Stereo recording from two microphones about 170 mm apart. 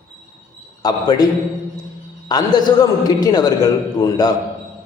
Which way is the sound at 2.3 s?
25° left (ahead or behind).